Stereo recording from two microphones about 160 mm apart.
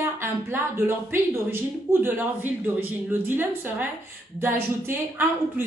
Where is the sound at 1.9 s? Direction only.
15° right (ahead or behind).